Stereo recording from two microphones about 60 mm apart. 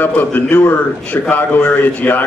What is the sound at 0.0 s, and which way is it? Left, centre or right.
A man's voice, left.